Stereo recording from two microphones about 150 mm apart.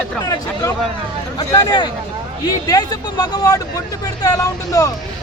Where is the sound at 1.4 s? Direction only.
15° left (ahead or behind).